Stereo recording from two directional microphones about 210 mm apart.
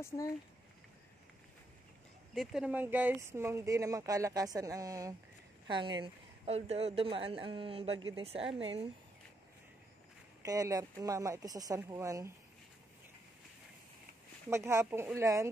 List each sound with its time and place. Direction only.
2.3 s a woman's voice: centre (ahead or behind); by 8.5 s 25° right (ahead or behind)
10.4 s speech: 15° right (ahead or behind)
14.5 s speech: 10° right (ahead or behind)